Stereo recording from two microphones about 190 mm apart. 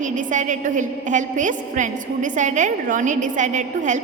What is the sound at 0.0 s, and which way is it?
A woman's voice, 40° right (ahead or behind).